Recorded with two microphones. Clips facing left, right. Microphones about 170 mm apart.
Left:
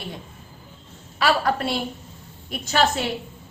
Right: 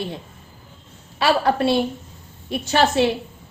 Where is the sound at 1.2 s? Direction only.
30° right (ahead or behind).